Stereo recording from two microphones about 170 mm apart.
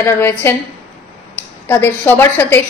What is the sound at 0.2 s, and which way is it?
A woman's voice, 15° left (ahead or behind).